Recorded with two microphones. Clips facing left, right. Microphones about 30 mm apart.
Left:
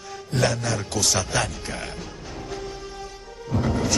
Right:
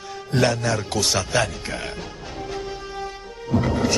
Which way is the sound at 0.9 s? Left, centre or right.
Right.